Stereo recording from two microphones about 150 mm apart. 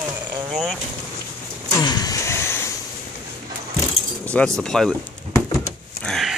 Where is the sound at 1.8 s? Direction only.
25° left (ahead or behind).